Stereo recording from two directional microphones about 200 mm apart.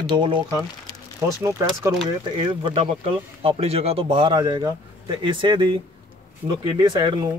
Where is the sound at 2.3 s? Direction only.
25° right (ahead or behind).